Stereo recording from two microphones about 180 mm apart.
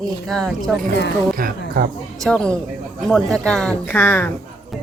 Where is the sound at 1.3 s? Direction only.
55° right (ahead or behind).